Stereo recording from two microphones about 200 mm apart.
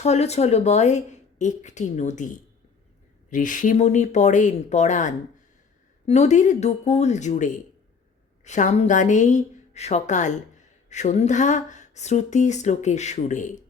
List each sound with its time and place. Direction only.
0.0 s speech: 35° left (ahead or behind)